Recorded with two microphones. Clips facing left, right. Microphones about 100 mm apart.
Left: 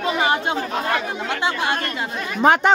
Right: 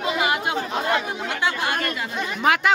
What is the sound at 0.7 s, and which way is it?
Speech, 20° right (ahead or behind).